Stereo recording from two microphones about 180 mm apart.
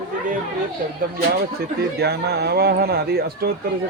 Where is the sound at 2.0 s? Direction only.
65° right (ahead or behind).